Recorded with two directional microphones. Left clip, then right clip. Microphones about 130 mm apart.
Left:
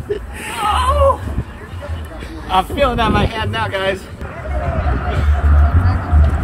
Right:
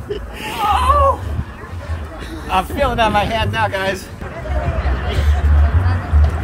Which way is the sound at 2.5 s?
70° right (ahead or behind).